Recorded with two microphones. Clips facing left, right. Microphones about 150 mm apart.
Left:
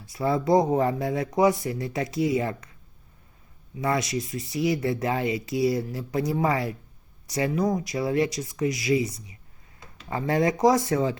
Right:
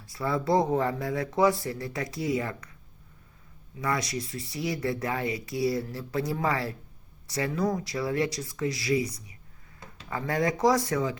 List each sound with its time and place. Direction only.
0.1 s speech: 20° left (ahead or behind)
3.8 s speech: 20° left (ahead or behind)